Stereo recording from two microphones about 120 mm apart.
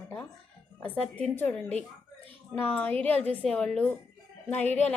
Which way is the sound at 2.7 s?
15° left (ahead or behind).